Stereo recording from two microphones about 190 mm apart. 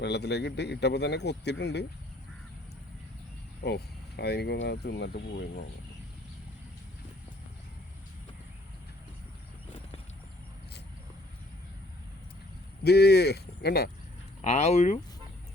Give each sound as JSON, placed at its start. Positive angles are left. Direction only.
{"t": 0.0, "sound": "speech", "side_deg": 60}
{"t": 3.6, "sound": "speech", "side_deg": 60}
{"t": 12.8, "sound": "speech", "side_deg": 60}
{"t": 14.4, "sound": "speech", "side_deg": 35}